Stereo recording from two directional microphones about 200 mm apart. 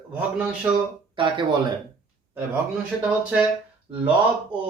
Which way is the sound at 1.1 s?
25° right (ahead or behind).